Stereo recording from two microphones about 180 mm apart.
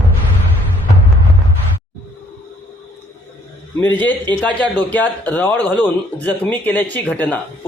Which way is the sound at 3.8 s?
10° left (ahead or behind).